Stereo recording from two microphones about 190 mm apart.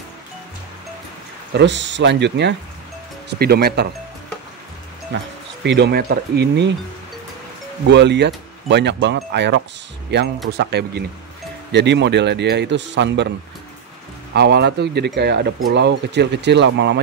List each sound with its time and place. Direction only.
1.5 s speech: 70° right (ahead or behind)
5.6 s speech: 65° right (ahead or behind)
7.9 s speech: 65° right (ahead or behind)
14.3 s speech: 60° right (ahead or behind)